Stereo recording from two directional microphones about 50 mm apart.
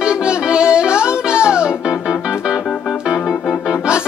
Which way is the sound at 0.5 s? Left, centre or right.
Centre.